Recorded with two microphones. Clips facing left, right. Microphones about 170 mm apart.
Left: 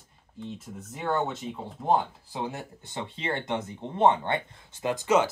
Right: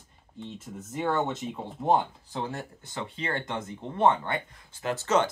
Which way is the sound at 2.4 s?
20° left (ahead or behind).